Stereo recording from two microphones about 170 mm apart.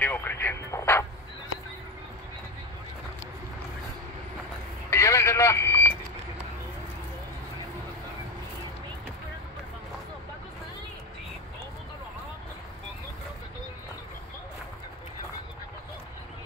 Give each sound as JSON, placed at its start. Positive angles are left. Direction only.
{"t": 0.0, "sound": "vehicle", "side_deg": 10}
{"t": 4.8, "sound": "vehicle", "side_deg": 15}